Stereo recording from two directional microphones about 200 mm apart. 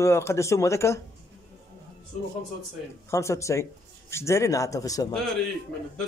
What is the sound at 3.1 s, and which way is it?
Speech, 15° left (ahead or behind).